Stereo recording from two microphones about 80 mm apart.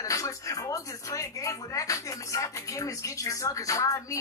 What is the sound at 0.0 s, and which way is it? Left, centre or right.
Speech, left.